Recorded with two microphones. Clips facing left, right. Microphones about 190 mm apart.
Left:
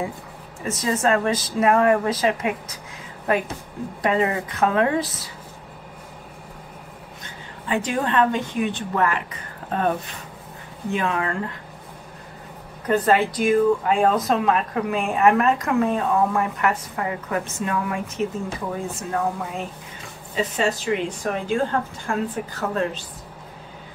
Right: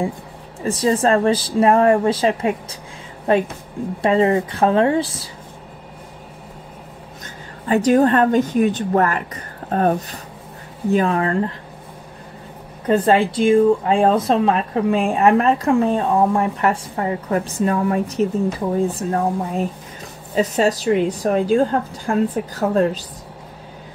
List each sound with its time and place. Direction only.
0.7 s speech: 30° right (ahead or behind)
7.6 s speech: 40° right (ahead or behind)
12.8 s speech: 30° right (ahead or behind)
22.6 s speech: 40° right (ahead or behind)